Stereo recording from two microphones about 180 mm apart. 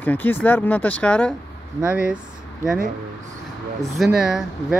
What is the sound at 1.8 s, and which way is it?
Speech, 5° right (ahead or behind).